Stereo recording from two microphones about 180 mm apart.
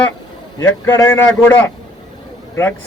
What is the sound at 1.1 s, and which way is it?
Speech, 10° left (ahead or behind).